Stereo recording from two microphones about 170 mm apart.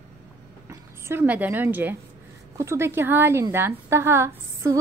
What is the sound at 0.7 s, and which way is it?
A woman's voice, 15° right (ahead or behind).